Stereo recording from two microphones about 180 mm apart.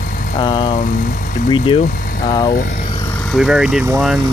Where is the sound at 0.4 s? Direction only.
25° left (ahead or behind).